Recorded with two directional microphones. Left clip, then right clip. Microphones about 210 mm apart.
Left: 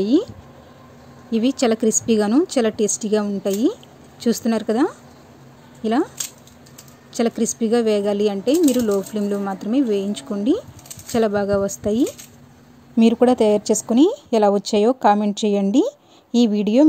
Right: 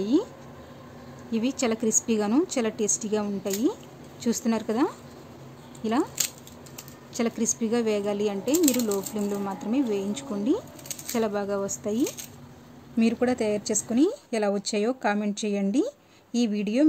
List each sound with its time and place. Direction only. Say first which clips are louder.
0.0 s a woman's voice: left 6 dB; 20° left (ahead or behind)
1.3 s a woman's voice: left 8 dB; 20° left (ahead or behind)
7.2 s a woman's voice: left 7 dB; 20° left (ahead or behind)